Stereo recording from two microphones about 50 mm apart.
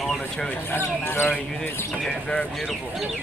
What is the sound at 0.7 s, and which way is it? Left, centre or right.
Speech, left.